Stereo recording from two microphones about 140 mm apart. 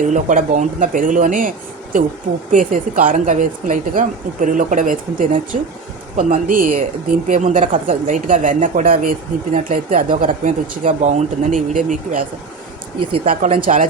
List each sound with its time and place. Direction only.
0.0 s a woman's voice: 65° right (ahead or behind)
6.1 s a woman's voice: 60° right (ahead or behind)
13.6 s a woman's voice: 70° right (ahead or behind)